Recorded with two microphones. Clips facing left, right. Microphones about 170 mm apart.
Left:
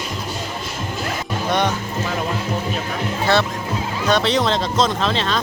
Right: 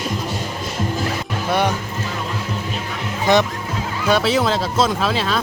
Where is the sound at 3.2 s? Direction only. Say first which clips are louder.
Right 3 dB; 15° right (ahead or behind).